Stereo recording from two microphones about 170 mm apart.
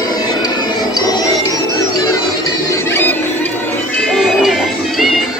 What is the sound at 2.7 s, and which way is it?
Music, 15° left (ahead or behind).